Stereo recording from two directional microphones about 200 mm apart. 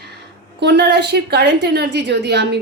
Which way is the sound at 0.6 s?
60° right (ahead or behind).